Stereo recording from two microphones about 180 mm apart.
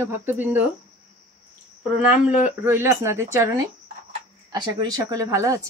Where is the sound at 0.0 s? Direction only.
15° right (ahead or behind).